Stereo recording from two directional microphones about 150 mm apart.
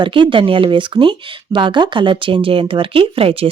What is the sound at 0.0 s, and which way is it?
Speech, 35° right (ahead or behind).